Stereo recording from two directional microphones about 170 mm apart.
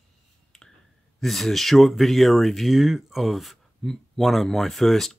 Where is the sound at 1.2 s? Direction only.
Centre (ahead or behind).